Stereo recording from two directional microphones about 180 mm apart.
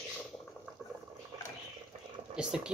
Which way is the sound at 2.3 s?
5° right (ahead or behind).